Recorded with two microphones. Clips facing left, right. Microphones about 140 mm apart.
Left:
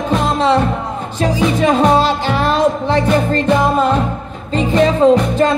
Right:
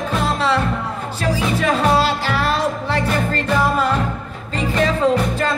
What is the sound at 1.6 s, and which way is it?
Music, 30° left (ahead or behind).